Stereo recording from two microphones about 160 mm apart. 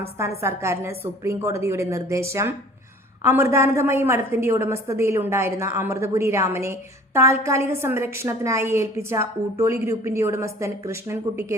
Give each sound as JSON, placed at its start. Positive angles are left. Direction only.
{"t": 0.2, "sound": "a woman's voice", "side_deg": -15}